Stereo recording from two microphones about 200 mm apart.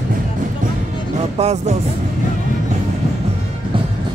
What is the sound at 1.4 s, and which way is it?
Speech, 35° right (ahead or behind).